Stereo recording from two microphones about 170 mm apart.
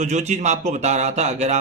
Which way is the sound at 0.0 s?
40° right (ahead or behind).